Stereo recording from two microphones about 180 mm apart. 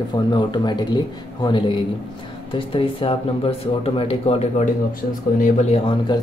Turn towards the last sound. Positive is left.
turn(degrees=25)  # may be behind; listen again after turning